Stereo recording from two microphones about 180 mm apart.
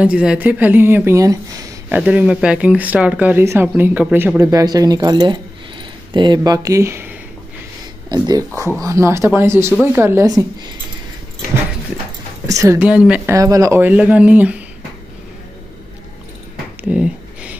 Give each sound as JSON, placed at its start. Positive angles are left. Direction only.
{"t": 0.0, "sound": "speech", "side_deg": -5}
{"t": 2.0, "sound": "speech", "side_deg": -5}
{"t": 12.4, "sound": "speech", "side_deg": -15}
{"t": 13.4, "sound": "speech", "side_deg": -20}
{"t": 16.9, "sound": "a sound", "side_deg": -5}